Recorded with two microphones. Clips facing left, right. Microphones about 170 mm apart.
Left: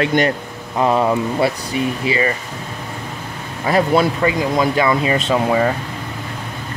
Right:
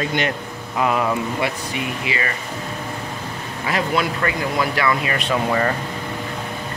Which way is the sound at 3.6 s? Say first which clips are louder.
Left 7 dB; 35° left (ahead or behind).